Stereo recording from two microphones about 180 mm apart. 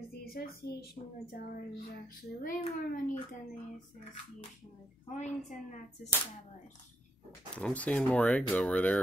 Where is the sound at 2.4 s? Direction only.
50° left (ahead or behind).